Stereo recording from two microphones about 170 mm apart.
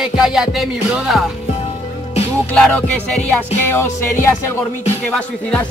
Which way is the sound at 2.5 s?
5° left (ahead or behind).